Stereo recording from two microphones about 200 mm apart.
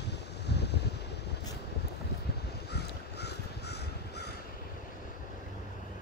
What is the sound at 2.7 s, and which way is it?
Crow, 55° left (ahead or behind).